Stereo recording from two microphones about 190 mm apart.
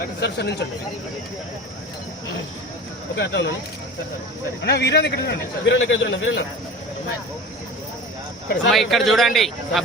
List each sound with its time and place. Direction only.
0.2 s a man's voice: 60° left (ahead or behind)
3.2 s speech: 70° left (ahead or behind)
4.6 s a man's voice: 60° left (ahead or behind); by 6.4 s 75° left (ahead or behind)
8.7 s a man's voice: centre (ahead or behind)